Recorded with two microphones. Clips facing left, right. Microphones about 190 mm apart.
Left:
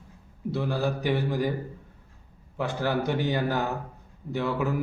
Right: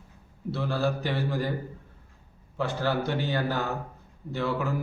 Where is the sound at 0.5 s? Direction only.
15° left (ahead or behind).